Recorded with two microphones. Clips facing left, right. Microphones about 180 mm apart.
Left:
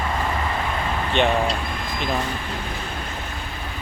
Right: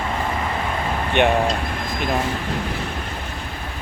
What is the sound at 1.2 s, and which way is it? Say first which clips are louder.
Speech: right 3 dB; 60° right (ahead or behind).